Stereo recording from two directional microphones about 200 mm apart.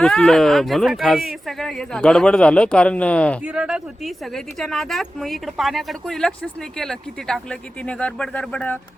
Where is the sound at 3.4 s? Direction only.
5° right (ahead or behind).